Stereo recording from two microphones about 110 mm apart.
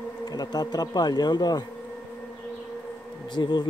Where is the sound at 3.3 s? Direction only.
45° left (ahead or behind).